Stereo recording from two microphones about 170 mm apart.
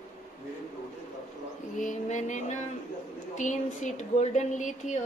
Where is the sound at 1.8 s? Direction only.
45° left (ahead or behind).